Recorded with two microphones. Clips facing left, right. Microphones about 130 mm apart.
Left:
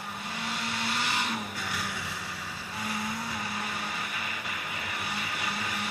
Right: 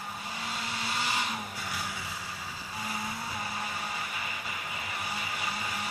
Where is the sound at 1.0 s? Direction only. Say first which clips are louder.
Right 1 dB; 60° left (ahead or behind).